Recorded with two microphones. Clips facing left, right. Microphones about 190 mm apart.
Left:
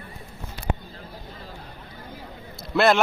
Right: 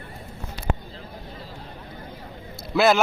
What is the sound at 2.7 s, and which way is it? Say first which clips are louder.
Speech: even; centre (ahead or behind).